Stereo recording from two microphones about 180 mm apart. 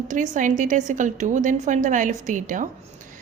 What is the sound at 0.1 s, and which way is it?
A woman's voice, 45° right (ahead or behind).